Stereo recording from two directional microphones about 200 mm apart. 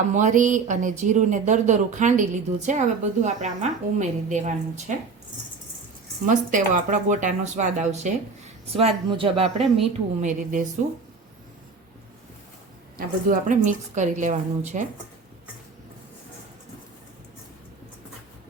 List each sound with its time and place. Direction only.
0.1 s speech: 35° right (ahead or behind)
6.2 s speech: 40° right (ahead or behind)
8.7 s speech: 25° right (ahead or behind)
10.2 s speech: 40° right (ahead or behind)
13.2 s speech: 40° right (ahead or behind)